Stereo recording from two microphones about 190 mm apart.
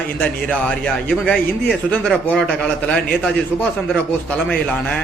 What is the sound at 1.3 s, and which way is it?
Speech, 5° left (ahead or behind).